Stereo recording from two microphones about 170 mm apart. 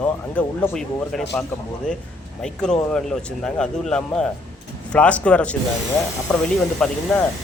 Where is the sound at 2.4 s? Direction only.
5° left (ahead or behind).